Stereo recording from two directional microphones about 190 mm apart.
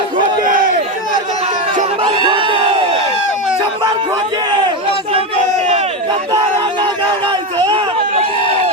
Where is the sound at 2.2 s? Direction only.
25° right (ahead or behind).